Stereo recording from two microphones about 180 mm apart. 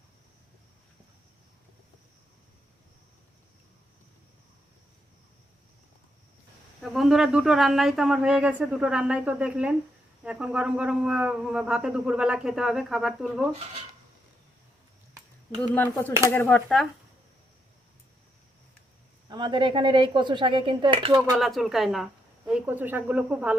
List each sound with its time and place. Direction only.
6.8 s speech: centre (ahead or behind)
15.5 s speech: 10° left (ahead or behind)
19.3 s speech: 25° right (ahead or behind)
21.3 s speech: centre (ahead or behind)